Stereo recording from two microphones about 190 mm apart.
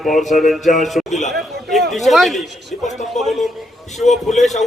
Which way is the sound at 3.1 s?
Centre (ahead or behind).